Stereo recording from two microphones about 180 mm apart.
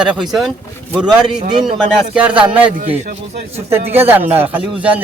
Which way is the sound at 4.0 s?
10° right (ahead or behind).